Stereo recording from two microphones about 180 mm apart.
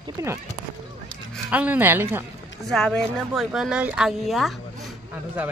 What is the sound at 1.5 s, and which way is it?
Speech, 10° right (ahead or behind).